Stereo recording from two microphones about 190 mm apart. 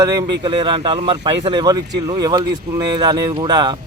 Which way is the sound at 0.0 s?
20° right (ahead or behind).